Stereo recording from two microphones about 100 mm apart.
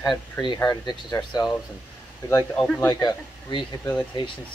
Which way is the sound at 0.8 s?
45° left (ahead or behind).